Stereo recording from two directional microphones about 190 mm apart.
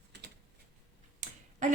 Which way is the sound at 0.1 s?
60° right (ahead or behind).